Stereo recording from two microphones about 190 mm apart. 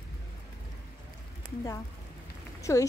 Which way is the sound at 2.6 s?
15° left (ahead or behind).